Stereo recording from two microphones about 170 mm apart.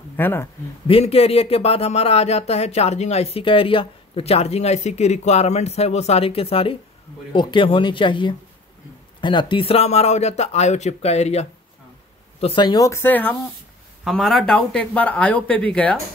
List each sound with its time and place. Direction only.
0.2 s speech: 15° left (ahead or behind)
0.8 s speech: 35° left (ahead or behind); by 16.0 s 5° left (ahead or behind)